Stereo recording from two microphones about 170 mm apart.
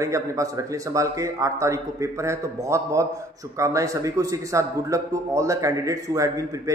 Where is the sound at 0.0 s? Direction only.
20° right (ahead or behind).